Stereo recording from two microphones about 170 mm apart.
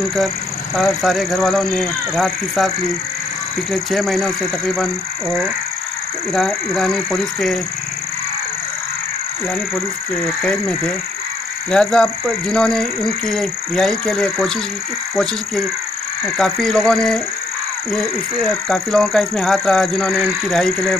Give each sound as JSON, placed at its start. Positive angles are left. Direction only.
{"t": 0.7, "sound": "speech", "side_deg": 0}
{"t": 3.7, "sound": "speech", "side_deg": 0}
{"t": 6.3, "sound": "speech", "side_deg": 0}
{"t": 10.4, "sound": "speech", "side_deg": 5}
{"t": 16.3, "sound": "speech", "side_deg": 5}
{"t": 18.7, "sound": "speech", "side_deg": 5}